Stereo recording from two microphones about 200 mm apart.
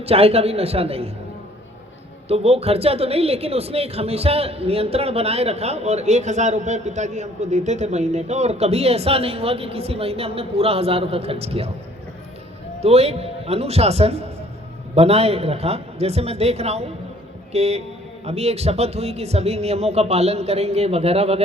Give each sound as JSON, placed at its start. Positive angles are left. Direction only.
{"t": 0.0, "sound": "speech", "side_deg": -30}
{"t": 2.2, "sound": "speech", "side_deg": -30}
{"t": 12.8, "sound": "a man's voice", "side_deg": -30}